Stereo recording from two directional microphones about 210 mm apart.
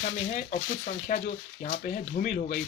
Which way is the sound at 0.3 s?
35° left (ahead or behind).